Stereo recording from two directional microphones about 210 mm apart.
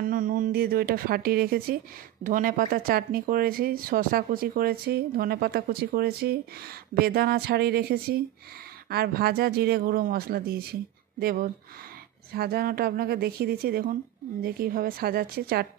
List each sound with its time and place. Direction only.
0.0 s speech: 40° right (ahead or behind)